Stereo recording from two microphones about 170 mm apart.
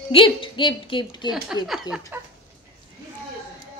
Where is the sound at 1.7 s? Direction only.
5° right (ahead or behind).